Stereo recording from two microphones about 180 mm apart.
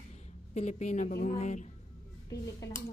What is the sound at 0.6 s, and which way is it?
A woman's voice, 40° left (ahead or behind).